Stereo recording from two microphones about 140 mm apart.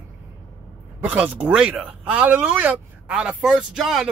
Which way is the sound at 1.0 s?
10° right (ahead or behind).